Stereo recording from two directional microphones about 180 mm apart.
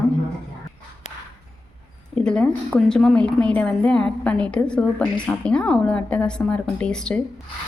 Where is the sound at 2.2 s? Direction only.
5° left (ahead or behind).